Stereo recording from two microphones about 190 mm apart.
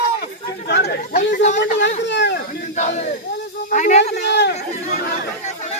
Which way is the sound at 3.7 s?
40° left (ahead or behind).